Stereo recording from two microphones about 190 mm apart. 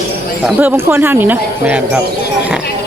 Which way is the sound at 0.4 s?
10° right (ahead or behind).